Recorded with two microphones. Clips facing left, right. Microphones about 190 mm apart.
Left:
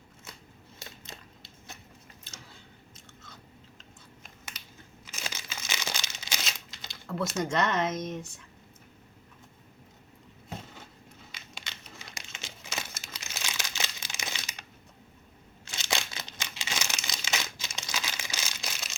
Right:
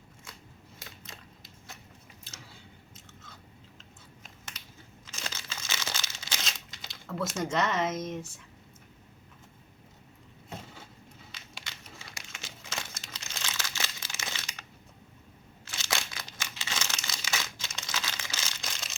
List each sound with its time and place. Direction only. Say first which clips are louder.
0.8 s typewriter: left 3 dB; 25° left (ahead or behind)
5.0 s crumpling: left 1 dB; 5° left (ahead or behind)
6.8 s speech: left 1 dB; centre (ahead or behind)
12.1 s a sound: left 1 dB; 20° left (ahead or behind)
12.9 s crumpling: left 1 dB; 5° left (ahead or behind)
15.7 s crumpling: left 2 dB; 20° left (ahead or behind)